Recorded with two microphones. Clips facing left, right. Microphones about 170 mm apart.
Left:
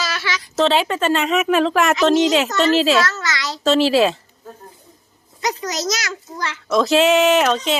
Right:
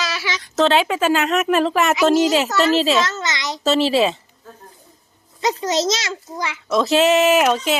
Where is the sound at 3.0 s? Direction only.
20° right (ahead or behind).